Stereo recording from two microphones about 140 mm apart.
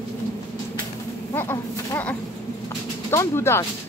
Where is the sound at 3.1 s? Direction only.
20° left (ahead or behind).